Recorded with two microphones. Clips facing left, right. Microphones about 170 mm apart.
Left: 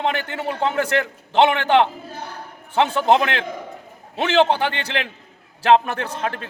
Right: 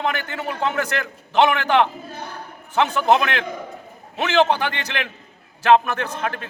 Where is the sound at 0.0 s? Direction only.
30° left (ahead or behind).